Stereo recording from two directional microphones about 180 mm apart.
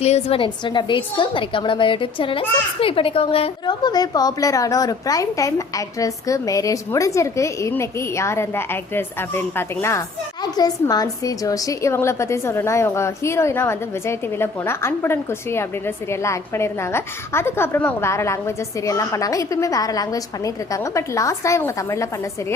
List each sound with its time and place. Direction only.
0.0 s a woman's voice: 35° left (ahead or behind); by 22.0 s 15° left (ahead or behind)